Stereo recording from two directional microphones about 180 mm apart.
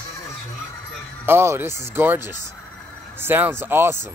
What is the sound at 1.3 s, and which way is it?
Speech, 15° right (ahead or behind).